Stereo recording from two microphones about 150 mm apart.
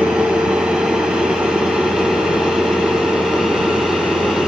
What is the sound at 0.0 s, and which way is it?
Vehicle, 5° right (ahead or behind).